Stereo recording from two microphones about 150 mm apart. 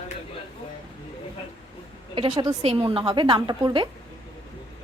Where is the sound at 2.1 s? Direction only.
30° right (ahead or behind).